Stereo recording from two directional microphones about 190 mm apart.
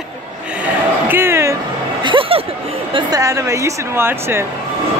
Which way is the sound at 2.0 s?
30° right (ahead or behind).